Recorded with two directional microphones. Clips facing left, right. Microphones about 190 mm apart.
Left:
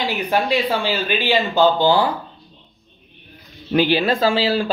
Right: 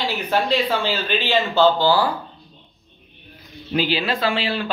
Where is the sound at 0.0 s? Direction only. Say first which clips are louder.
Left 2 dB; 15° left (ahead or behind).